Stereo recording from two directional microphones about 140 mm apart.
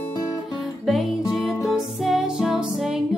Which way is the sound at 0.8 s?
Centre (ahead or behind).